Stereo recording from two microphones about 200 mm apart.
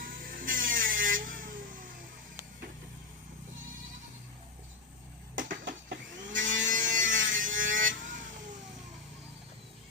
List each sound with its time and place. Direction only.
0.0 s vehicle: 45° right (ahead or behind)
5.3 s a sound: 45° right (ahead or behind)
6.9 s wood: 40° right (ahead or behind)